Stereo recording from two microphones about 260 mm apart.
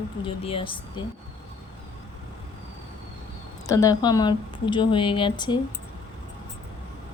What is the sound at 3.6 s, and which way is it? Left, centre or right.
Speech, centre.